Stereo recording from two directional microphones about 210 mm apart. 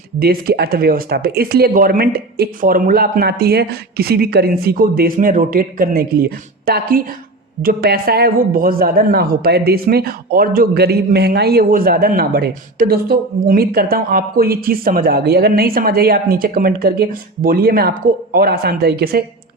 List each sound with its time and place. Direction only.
0.2 s a man's voice: 45° right (ahead or behind)